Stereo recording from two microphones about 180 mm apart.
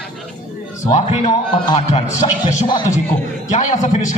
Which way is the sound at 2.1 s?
25° left (ahead or behind).